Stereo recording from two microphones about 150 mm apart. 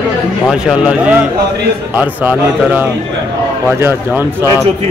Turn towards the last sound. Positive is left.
turn(degrees=-15)  # may be behind; listen again after turning